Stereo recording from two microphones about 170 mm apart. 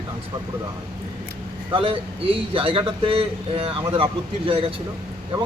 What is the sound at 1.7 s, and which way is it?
A man's voice, 30° right (ahead or behind).